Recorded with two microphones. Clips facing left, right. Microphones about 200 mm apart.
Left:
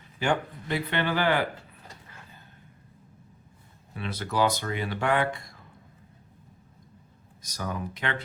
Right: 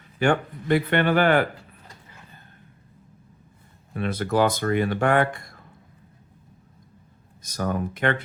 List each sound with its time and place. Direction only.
0.2 s speech: 55° right (ahead or behind)
3.9 s speech: 50° right (ahead or behind)
7.4 s speech: 50° right (ahead or behind)